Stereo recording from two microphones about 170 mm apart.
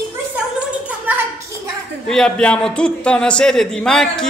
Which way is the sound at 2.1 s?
5° left (ahead or behind).